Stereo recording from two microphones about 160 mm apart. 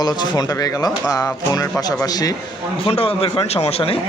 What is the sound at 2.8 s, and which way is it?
A man's voice, 35° left (ahead or behind).